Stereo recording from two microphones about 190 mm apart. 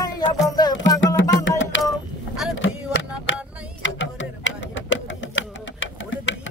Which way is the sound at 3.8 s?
75° left (ahead or behind).